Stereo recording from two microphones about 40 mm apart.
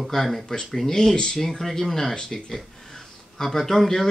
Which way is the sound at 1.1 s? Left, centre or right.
Left.